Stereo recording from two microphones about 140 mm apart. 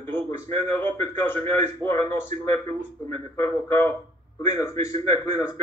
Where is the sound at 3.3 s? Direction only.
15° left (ahead or behind).